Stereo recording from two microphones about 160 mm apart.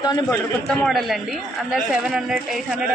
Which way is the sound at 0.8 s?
Centre (ahead or behind).